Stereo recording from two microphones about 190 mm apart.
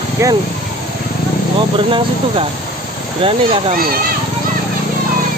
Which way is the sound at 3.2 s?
30° right (ahead or behind).